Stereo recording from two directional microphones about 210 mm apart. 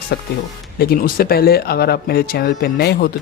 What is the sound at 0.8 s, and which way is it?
Speech, 45° left (ahead or behind).